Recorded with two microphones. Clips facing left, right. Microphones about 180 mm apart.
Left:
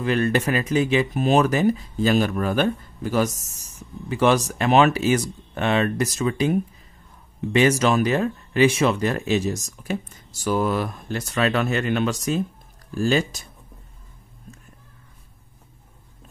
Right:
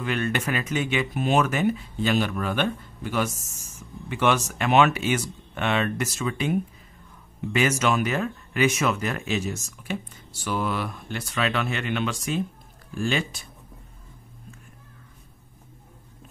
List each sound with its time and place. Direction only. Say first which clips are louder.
0.0 s speech: left 6 dB; 35° left (ahead or behind)
7.5 s speech: left 5 dB; 35° left (ahead or behind)